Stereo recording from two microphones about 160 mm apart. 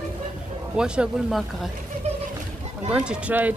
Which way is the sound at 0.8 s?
5° right (ahead or behind).